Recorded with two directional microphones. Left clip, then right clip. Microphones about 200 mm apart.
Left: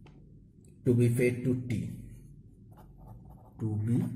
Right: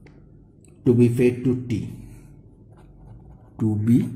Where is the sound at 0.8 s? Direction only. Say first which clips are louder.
Right 9 dB; 30° right (ahead or behind).